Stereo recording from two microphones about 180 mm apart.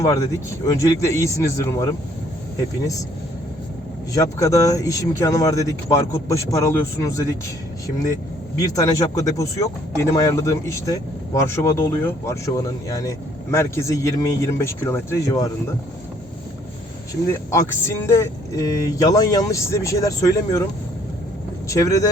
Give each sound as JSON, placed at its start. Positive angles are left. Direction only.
{"t": 0.0, "sound": "speech", "side_deg": 20}
{"t": 4.1, "sound": "speech", "side_deg": 20}
{"t": 8.5, "sound": "speech", "side_deg": 20}
{"t": 17.5, "sound": "speech", "side_deg": 15}
{"t": 21.7, "sound": "speech", "side_deg": 20}